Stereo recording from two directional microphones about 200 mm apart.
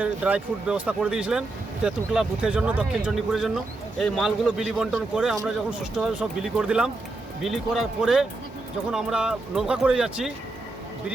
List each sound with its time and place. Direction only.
0.0 s speech: 5° right (ahead or behind)